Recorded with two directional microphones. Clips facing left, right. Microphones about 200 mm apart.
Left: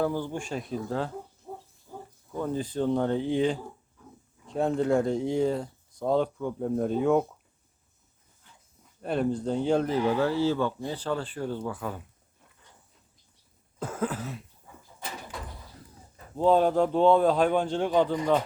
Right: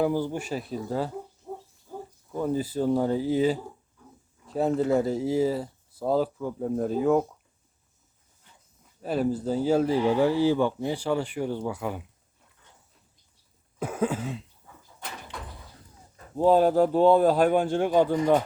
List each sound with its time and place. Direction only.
0.0 s speech: 10° right (ahead or behind)
2.3 s speech: 10° right (ahead or behind)
9.0 s speech: 5° right (ahead or behind)
13.7 s cough: 10° right (ahead or behind)
16.4 s speech: 5° right (ahead or behind)